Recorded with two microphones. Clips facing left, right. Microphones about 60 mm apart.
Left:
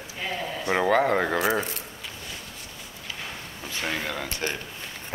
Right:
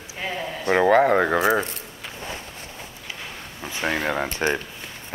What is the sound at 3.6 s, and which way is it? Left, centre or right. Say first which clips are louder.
Speech: right 5 dB; right.